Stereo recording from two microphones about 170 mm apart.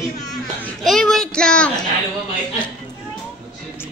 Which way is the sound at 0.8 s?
Centre (ahead or behind).